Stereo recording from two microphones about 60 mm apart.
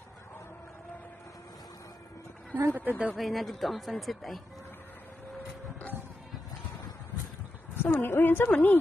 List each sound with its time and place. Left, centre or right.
2.5 s speech: right
3.2 s speech: centre
7.7 s a woman's voice: left
8.5 s a woman's voice: left